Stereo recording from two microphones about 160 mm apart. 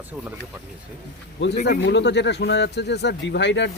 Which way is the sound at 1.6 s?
90° left.